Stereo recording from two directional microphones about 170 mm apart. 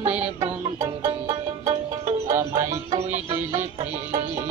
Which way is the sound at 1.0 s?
25° right (ahead or behind).